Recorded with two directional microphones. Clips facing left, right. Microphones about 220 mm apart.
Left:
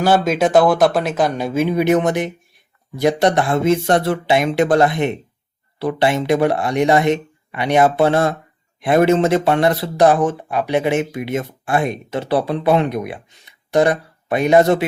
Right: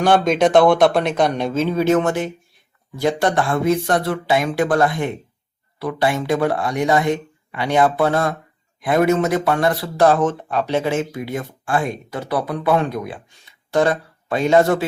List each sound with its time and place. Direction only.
0.0 s speech: 5° left (ahead or behind)